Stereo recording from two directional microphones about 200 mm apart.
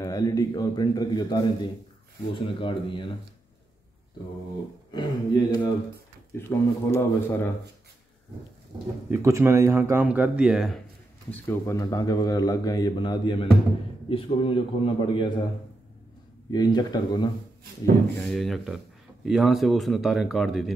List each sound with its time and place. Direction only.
0.0 s speech: 15° left (ahead or behind)
4.9 s speech: 20° left (ahead or behind)
9.1 s speech: 15° right (ahead or behind)
11.2 s speech: 10° left (ahead or behind)
16.5 s speech: 20° left (ahead or behind)
18.2 s speech: centre (ahead or behind)